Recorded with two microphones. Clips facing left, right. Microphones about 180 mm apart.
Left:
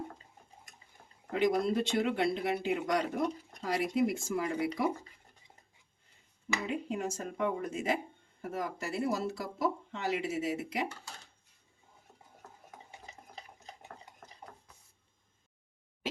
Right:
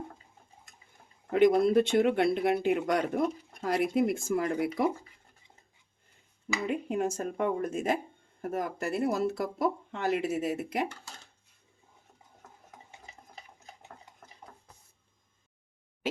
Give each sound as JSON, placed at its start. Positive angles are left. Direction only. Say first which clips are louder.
{"t": 1.3, "sound": "speech", "louder": "right 7 dB", "side_deg": -55}
{"t": 6.7, "sound": "speech", "louder": "right 6 dB", "side_deg": -55}
{"t": 14.4, "sound": "a sound", "louder": "left 1 dB", "side_deg": 10}